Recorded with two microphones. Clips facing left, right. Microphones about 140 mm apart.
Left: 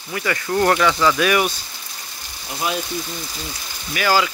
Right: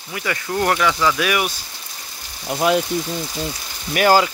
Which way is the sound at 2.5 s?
75° right (ahead or behind).